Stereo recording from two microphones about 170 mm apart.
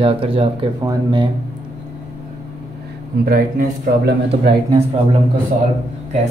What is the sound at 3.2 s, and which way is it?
Speech, 60° right (ahead or behind).